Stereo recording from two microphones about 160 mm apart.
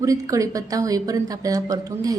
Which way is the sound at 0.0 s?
20° right (ahead or behind).